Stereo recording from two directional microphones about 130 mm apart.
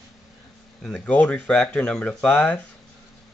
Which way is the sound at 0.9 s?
10° left (ahead or behind).